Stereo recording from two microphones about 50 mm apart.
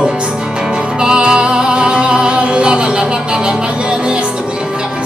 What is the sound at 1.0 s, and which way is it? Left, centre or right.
Music, centre.